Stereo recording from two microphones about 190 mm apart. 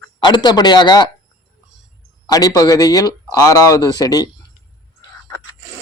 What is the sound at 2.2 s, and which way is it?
Speech, 20° left (ahead or behind).